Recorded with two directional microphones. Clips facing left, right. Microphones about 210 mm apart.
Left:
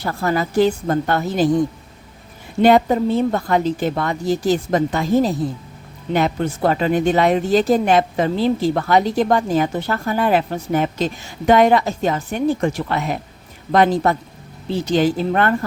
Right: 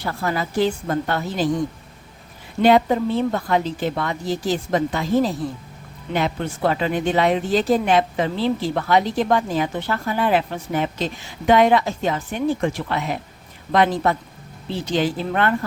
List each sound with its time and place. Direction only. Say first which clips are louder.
0.0 s speech: left 4 dB; 40° left (ahead or behind)
2.6 s speech: left 2 dB; 45° left (ahead or behind)